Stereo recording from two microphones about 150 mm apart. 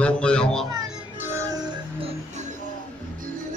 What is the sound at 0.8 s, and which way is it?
Music, 15° right (ahead or behind).